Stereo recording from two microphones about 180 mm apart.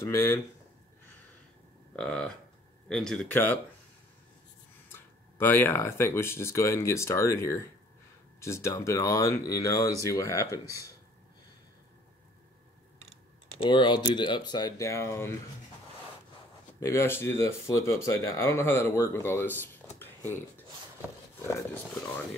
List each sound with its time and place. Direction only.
0.0 s speech: 15° left (ahead or behind)
2.0 s speech: 5° left (ahead or behind)
4.9 s speech: 10° left (ahead or behind)
13.6 s speech: 25° left (ahead or behind)
16.8 s speech: 15° left (ahead or behind)